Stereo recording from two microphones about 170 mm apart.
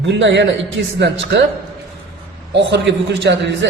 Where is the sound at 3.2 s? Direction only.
90° right.